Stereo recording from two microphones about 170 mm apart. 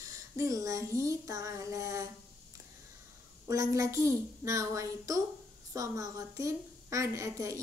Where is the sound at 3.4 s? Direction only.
20° right (ahead or behind).